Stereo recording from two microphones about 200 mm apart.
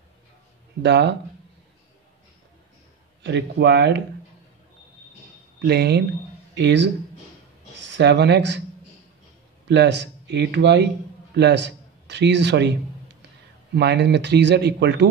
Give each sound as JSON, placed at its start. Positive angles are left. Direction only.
{"t": 0.8, "sound": "speech", "side_deg": -60}
{"t": 3.2, "sound": "speech", "side_deg": -60}
{"t": 5.6, "sound": "speech", "side_deg": -55}
{"t": 8.0, "sound": "speech", "side_deg": -60}
{"t": 9.7, "sound": "a man's voice", "side_deg": -60}
{"t": 13.7, "sound": "speech", "side_deg": -55}